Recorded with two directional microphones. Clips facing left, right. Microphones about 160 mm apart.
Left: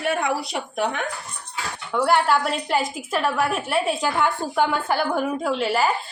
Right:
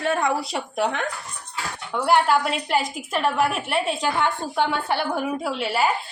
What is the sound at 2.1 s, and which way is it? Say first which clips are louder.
Speech: right 1 dB; centre (ahead or behind).